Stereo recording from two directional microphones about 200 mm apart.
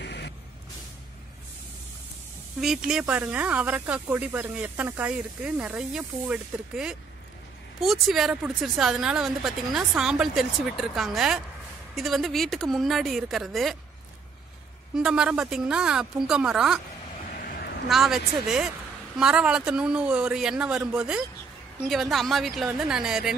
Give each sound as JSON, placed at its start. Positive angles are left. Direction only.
{"t": 0.0, "sound": "vehicle", "side_deg": 60}
{"t": 2.6, "sound": "speech", "side_deg": 0}
{"t": 15.0, "sound": "speech", "side_deg": -5}
{"t": 17.8, "sound": "speech", "side_deg": 0}